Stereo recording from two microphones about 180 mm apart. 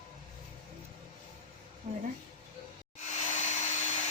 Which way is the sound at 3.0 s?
40° left (ahead or behind).